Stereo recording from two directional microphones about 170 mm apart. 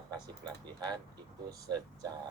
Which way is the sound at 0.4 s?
25° right (ahead or behind).